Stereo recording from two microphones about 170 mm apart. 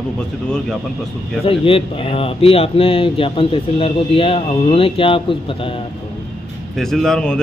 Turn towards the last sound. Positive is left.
turn(degrees=5)  # may be behind; listen again after turning